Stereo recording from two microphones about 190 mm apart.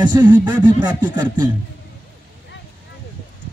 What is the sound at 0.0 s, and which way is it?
Speech, 25° right (ahead or behind).